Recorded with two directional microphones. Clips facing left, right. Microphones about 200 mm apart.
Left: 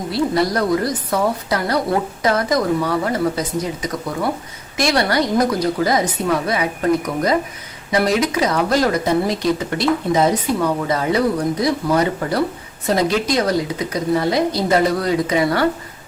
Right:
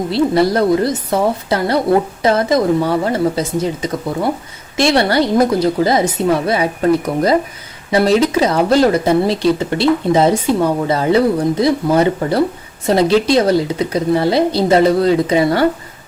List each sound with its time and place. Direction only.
0.1 s speech: 25° right (ahead or behind)